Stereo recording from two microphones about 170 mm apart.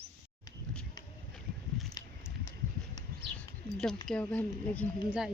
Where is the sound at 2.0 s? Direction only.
25° left (ahead or behind).